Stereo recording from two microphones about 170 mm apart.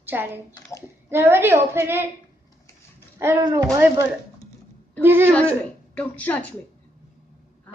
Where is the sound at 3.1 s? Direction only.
15° right (ahead or behind).